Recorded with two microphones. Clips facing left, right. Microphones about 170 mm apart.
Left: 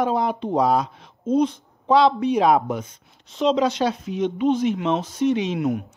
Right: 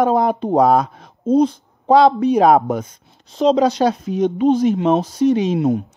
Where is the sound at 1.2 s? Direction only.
35° right (ahead or behind).